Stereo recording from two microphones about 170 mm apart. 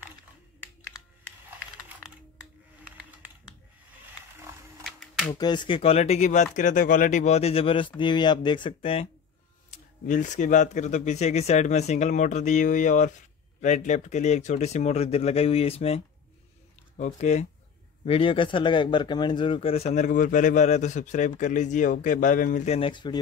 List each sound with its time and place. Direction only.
4.8 s a sound: centre (ahead or behind)
5.3 s speech: 25° left (ahead or behind)
10.0 s speech: 45° left (ahead or behind)
22.7 s speech: 30° left (ahead or behind)